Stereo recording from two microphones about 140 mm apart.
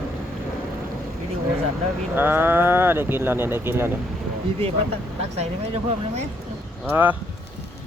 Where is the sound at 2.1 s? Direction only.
15° right (ahead or behind).